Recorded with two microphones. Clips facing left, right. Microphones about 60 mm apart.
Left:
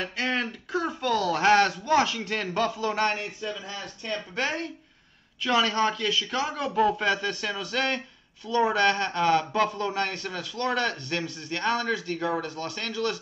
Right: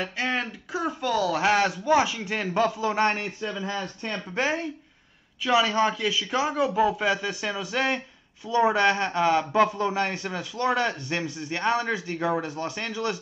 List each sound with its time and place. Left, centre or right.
0.0 s a man's voice: centre
3.1 s speech: right
4.4 s a man's voice: centre